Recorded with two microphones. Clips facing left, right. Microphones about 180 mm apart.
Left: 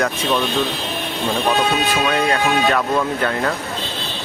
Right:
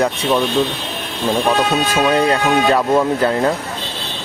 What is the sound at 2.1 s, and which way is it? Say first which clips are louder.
Speech: right 4 dB; 30° right (ahead or behind).